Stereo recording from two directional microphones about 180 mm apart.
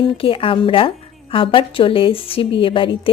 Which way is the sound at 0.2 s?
30° left (ahead or behind).